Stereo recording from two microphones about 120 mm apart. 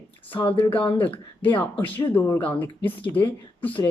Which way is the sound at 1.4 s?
15° left (ahead or behind).